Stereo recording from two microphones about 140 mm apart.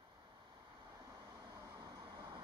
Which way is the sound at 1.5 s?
20° right (ahead or behind).